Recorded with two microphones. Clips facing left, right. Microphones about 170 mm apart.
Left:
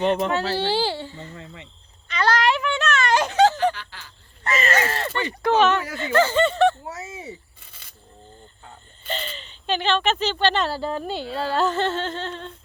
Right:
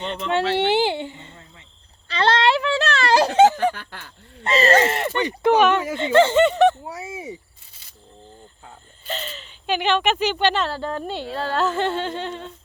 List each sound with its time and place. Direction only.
0.3 s speech: 20° right (ahead or behind)
2.0 s a sound: 30° right (ahead or behind)
3.8 s speech: 55° right (ahead or behind)
4.4 s speech: 30° right (ahead or behind); by 7.3 s 10° right (ahead or behind)
7.7 s single-lens reflex camera: 60° left (ahead or behind)
8.6 s a sound: centre (ahead or behind)
10.6 s speech: 5° left (ahead or behind)
11.8 s humming: 10° right (ahead or behind)